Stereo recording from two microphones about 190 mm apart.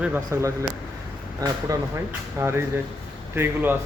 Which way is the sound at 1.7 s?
20° right (ahead or behind).